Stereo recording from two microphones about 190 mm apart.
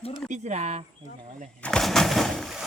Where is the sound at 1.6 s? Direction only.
Centre (ahead or behind).